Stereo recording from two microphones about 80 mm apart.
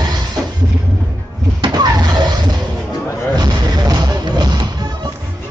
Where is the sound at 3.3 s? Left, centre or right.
Right.